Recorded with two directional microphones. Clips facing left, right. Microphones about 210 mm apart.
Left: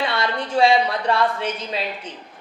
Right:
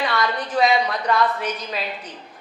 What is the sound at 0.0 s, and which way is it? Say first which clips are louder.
A woman's voice: even; 25° left (ahead or behind).